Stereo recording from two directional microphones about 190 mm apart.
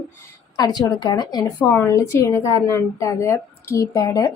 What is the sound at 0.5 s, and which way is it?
A woman's voice, 20° left (ahead or behind).